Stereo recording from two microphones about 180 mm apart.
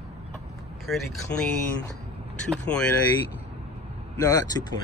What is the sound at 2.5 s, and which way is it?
Speech, 5° left (ahead or behind).